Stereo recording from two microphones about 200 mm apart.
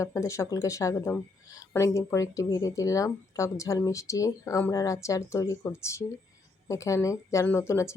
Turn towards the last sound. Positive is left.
turn(degrees=15)  # may be behind; listen again after turning